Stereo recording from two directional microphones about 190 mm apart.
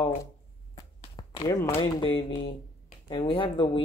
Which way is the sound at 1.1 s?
20° left (ahead or behind).